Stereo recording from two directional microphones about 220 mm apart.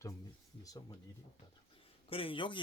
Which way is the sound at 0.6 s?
15° left (ahead or behind).